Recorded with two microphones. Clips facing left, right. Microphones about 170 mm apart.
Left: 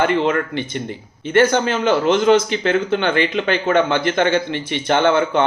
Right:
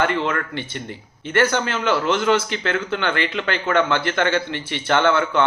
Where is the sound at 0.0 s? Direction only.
20° left (ahead or behind).